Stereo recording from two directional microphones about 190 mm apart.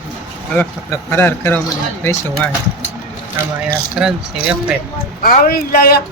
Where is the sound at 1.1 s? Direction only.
10° left (ahead or behind).